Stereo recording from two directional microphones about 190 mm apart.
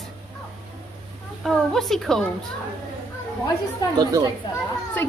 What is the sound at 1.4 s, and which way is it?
Speech, centre (ahead or behind).